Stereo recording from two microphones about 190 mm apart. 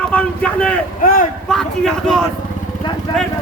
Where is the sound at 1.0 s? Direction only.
45° left (ahead or behind).